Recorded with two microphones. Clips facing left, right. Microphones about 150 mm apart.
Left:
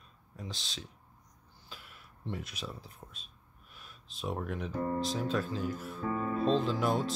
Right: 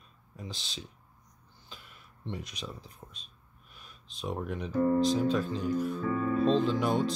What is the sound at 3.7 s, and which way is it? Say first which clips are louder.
Music: even; centre (ahead or behind).